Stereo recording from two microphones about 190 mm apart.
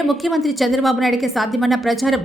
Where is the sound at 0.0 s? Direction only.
Centre (ahead or behind).